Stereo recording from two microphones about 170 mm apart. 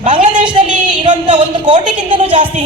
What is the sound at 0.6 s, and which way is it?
Speech, 5° right (ahead or behind).